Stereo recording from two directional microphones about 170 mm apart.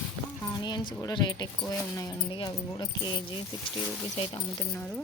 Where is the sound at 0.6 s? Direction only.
25° left (ahead or behind).